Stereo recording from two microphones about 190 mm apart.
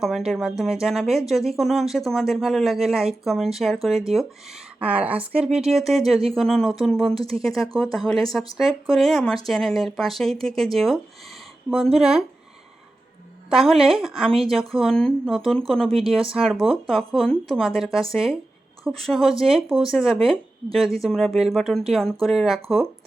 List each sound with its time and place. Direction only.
0.0 s speech: centre (ahead or behind)
7.1 s speech: 30° right (ahead or behind)
7.4 s speech: centre (ahead or behind)
13.5 s speech: centre (ahead or behind)
15.9 s speech: 30° right (ahead or behind)
16.3 s speech: centre (ahead or behind)